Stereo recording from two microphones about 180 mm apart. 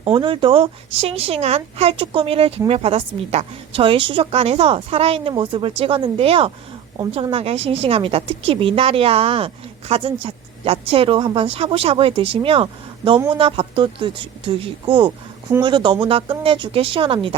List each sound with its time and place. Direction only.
0.0 s a woman's voice: 30° right (ahead or behind)